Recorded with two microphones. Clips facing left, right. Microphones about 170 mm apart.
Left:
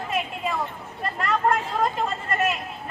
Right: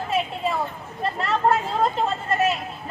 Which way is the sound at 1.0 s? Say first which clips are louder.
Right 2 dB; 30° right (ahead or behind).